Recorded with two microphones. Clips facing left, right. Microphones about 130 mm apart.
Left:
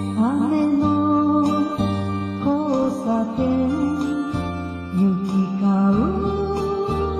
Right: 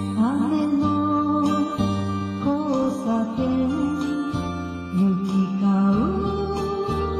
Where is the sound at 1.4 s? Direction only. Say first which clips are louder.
Left 2 dB; 45° left (ahead or behind).